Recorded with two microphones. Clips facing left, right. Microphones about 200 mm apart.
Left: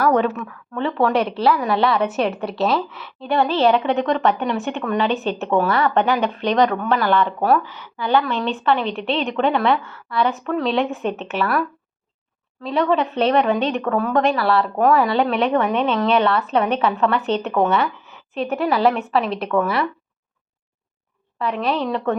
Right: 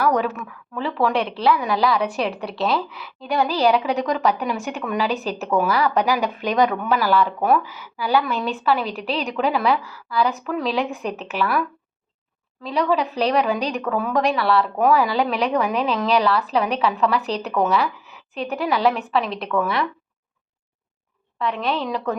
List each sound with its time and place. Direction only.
0.2 s a woman's voice: 5° right (ahead or behind)
12.6 s a woman's voice: centre (ahead or behind)
21.3 s a woman's voice: 5° left (ahead or behind)